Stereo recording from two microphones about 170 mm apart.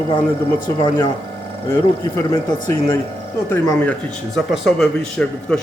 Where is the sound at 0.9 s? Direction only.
25° left (ahead or behind).